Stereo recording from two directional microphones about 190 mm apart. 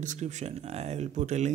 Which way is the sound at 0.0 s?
40° right (ahead or behind).